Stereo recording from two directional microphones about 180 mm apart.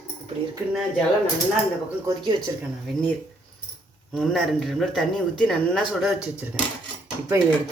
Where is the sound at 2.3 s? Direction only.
Centre (ahead or behind).